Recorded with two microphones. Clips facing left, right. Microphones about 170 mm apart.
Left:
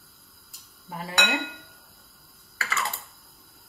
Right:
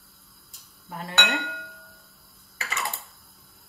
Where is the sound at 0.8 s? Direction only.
5° left (ahead or behind).